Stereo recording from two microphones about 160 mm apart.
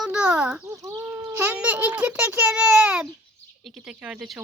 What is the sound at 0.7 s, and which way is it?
A child's voice, 20° right (ahead or behind).